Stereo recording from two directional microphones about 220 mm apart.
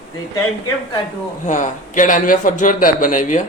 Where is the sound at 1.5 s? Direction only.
35° left (ahead or behind).